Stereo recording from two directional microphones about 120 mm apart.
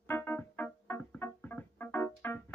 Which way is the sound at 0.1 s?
15° left (ahead or behind).